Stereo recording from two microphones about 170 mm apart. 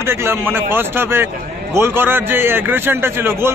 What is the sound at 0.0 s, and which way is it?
Speech, 15° right (ahead or behind).